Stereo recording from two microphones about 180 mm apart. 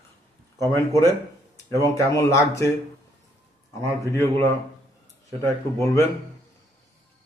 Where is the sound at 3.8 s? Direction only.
15° left (ahead or behind).